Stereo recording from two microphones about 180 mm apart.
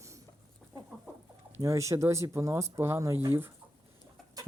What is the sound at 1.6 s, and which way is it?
Speech, 15° right (ahead or behind).